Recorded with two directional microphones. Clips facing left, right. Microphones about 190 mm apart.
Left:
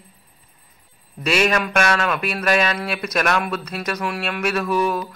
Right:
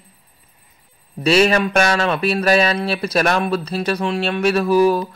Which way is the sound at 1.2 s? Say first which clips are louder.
Right 5 dB; 30° right (ahead or behind).